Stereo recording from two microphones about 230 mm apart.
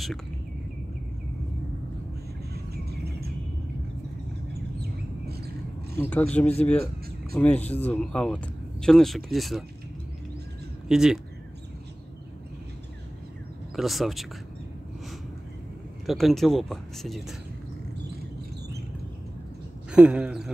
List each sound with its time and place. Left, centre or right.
2.7 s a sound: right
5.2 s bird: right
5.9 s speech: centre
10.9 s speech: centre
13.7 s speech: centre
16.1 s speech: centre
19.9 s speech: centre